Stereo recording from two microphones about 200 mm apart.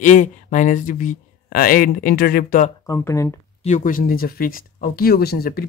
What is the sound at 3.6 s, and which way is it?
Speech, 40° left (ahead or behind).